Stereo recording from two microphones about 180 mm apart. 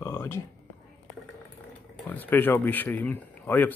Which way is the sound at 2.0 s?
10° left (ahead or behind).